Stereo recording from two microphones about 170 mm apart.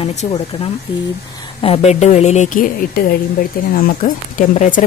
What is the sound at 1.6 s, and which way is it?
Speech, 35° left (ahead or behind).